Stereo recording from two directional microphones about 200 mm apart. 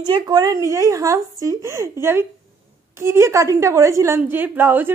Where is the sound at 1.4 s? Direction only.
15° right (ahead or behind).